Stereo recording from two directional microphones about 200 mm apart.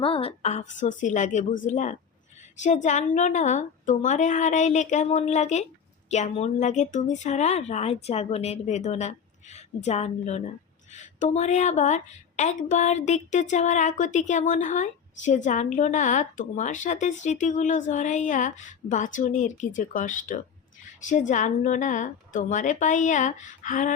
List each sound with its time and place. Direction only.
0.0 s a woman's voice: 30° left (ahead or behind)